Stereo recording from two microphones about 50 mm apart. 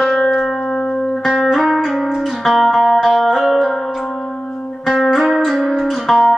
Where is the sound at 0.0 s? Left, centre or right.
Centre.